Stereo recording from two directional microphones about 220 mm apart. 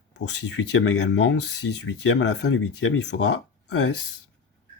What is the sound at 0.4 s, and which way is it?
Speech, 55° left (ahead or behind).